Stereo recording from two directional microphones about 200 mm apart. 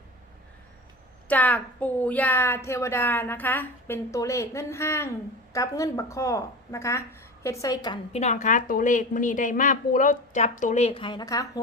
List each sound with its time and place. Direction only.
1.3 s a woman's voice: 10° left (ahead or behind)
8.1 s a woman's voice: 35° left (ahead or behind); by 11.6 s 20° left (ahead or behind)